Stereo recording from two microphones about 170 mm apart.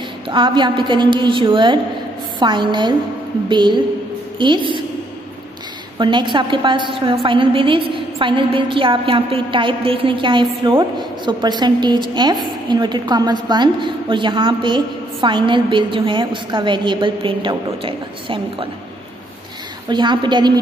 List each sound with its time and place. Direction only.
0.3 s a woman's voice: 30° right (ahead or behind)
5.9 s a woman's voice: 25° right (ahead or behind)
19.9 s a woman's voice: 25° right (ahead or behind)